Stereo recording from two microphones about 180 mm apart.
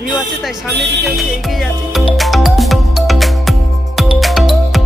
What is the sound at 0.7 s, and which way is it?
Music, 75° right (ahead or behind).